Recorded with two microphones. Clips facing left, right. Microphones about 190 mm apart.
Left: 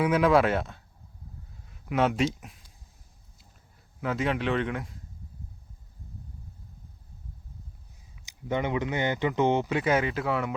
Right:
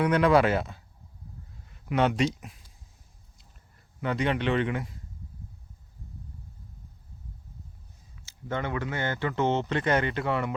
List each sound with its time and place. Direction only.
0.0 s speech: 5° left (ahead or behind)
3.3 s a sound: centre (ahead or behind)
8.2 s speech: 15° left (ahead or behind)